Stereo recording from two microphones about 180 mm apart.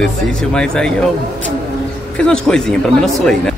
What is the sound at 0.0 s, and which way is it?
Speech, 5° left (ahead or behind).